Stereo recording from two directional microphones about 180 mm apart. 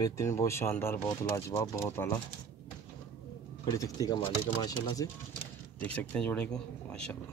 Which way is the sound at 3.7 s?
20° left (ahead or behind).